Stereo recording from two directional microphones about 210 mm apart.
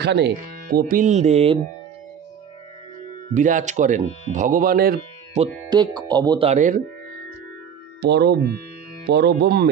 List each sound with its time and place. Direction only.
0.0 s speech: 50° right (ahead or behind); by 1.6 s 30° right (ahead or behind)
3.3 s speech: 35° right (ahead or behind)
5.4 s speech: 30° right (ahead or behind)
5.7 s speech: 20° right (ahead or behind); by 6.8 s 35° right (ahead or behind)
8.0 s speech: 50° right (ahead or behind)